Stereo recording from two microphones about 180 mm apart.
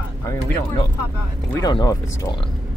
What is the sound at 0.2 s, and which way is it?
Speech, 15° left (ahead or behind).